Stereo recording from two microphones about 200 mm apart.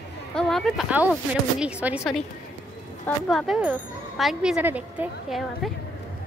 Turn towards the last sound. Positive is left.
turn(degrees=0)  # may be behind; listen again after turning